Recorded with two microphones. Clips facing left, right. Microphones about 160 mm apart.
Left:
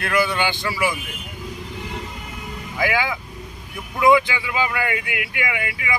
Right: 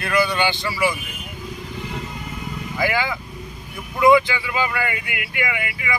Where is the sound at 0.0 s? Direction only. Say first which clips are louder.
Right 1 dB; 5° left (ahead or behind).